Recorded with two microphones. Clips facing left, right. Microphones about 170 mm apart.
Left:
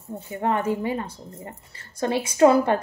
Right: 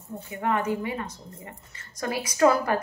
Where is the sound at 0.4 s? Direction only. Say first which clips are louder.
Left 2 dB; 30° left (ahead or behind).